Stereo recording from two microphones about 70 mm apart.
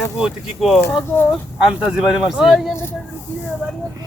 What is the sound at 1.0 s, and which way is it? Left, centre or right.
Speech, left.